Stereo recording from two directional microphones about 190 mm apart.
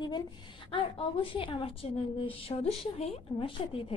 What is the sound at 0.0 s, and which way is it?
A woman's voice, 25° left (ahead or behind).